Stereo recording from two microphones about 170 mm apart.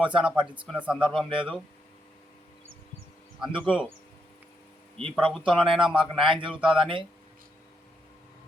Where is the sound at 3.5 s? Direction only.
30° right (ahead or behind).